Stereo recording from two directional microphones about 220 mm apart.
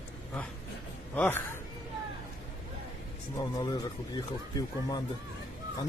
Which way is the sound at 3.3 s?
15° left (ahead or behind).